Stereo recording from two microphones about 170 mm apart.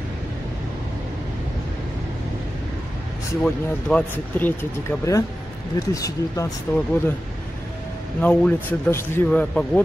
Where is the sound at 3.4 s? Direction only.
5° left (ahead or behind).